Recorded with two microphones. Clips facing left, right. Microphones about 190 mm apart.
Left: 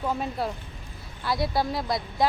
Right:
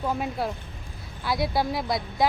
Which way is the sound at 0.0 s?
Centre (ahead or behind).